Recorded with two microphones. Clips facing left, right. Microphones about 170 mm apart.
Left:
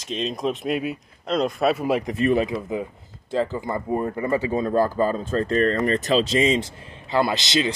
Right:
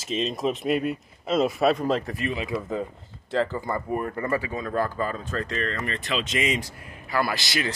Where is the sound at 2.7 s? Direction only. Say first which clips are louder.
Left 1 dB; 15° left (ahead or behind).